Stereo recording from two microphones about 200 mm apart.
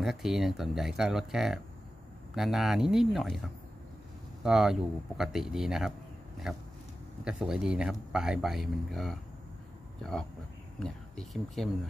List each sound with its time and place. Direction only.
0.0 s speech: centre (ahead or behind)
4.4 s speech: centre (ahead or behind)
10.8 s speech: centre (ahead or behind)